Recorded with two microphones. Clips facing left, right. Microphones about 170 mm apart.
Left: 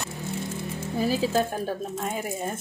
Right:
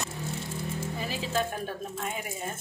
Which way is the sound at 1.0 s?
40° left (ahead or behind).